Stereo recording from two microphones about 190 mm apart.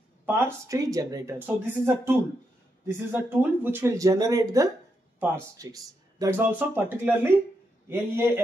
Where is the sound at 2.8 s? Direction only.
10° right (ahead or behind).